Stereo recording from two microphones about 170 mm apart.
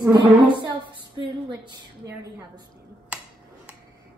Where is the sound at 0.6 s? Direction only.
25° right (ahead or behind).